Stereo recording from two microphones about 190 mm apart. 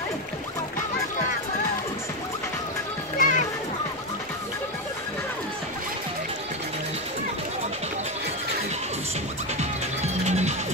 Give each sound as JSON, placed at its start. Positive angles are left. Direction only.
{"t": 3.2, "sound": "children playing", "side_deg": 45}
{"t": 10.2, "sound": "music", "side_deg": -35}